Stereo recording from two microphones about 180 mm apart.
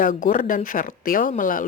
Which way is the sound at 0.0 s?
50° left (ahead or behind).